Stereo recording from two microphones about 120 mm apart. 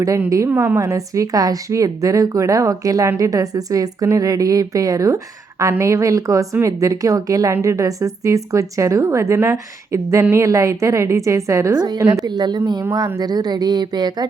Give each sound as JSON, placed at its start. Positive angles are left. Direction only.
{"t": 0.3, "sound": "a woman's voice", "side_deg": -25}
{"t": 0.5, "sound": "a woman's voice", "side_deg": -15}
{"t": 0.8, "sound": "a woman's voice", "side_deg": -25}